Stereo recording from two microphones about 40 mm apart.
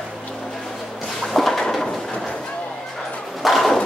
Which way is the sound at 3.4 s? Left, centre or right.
Centre.